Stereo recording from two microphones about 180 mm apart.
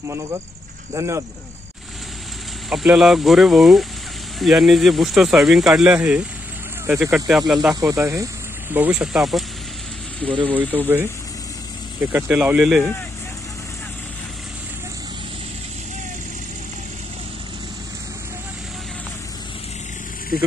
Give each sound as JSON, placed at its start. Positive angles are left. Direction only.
{"t": 0.9, "sound": "speech", "side_deg": -15}
{"t": 2.7, "sound": "speech", "side_deg": -5}
{"t": 7.7, "sound": "speech", "side_deg": -15}
{"t": 10.2, "sound": "speech", "side_deg": -30}
{"t": 10.5, "sound": "speech", "side_deg": -10}
{"t": 12.1, "sound": "speech", "side_deg": -10}